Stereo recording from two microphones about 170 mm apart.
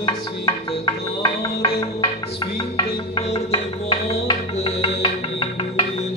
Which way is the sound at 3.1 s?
40° left (ahead or behind).